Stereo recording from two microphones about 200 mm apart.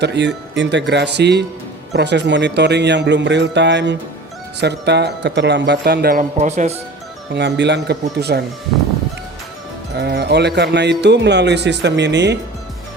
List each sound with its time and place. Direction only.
0.0 s speech: 60° right (ahead or behind)
6.3 s speech: 35° right (ahead or behind)
7.3 s speech: 60° right (ahead or behind)
10.0 s speech: 55° right (ahead or behind)